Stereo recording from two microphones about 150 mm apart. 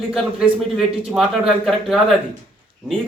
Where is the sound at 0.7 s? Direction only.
5° right (ahead or behind).